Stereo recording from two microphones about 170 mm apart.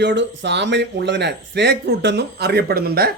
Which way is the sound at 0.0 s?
90° right.